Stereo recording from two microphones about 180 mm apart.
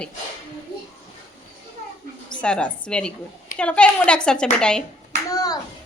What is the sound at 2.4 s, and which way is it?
A woman's voice, 5° left (ahead or behind).